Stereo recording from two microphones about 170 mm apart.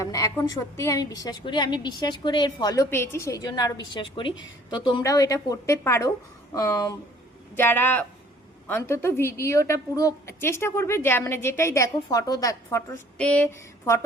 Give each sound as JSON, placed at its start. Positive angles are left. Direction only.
{"t": 0.0, "sound": "a woman's voice", "side_deg": 20}
{"t": 13.1, "sound": "speech", "side_deg": 10}